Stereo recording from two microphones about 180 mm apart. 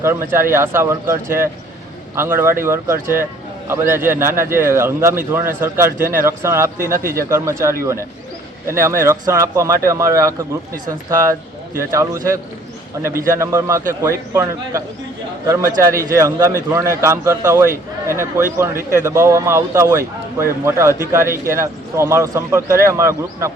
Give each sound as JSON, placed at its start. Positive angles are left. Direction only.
{"t": 0.3, "sound": "a man's voice", "side_deg": -15}
{"t": 11.8, "sound": "a man's voice", "side_deg": -15}